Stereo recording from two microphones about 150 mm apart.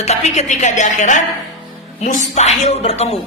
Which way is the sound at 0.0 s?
50° left (ahead or behind).